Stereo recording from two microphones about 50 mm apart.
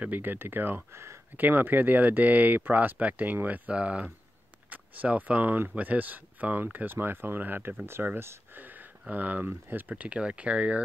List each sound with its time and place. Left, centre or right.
0.0 s speech: right
8.5 s a sound: right
9.1 s speech: right